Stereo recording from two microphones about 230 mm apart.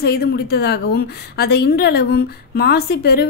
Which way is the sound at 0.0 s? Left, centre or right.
Left.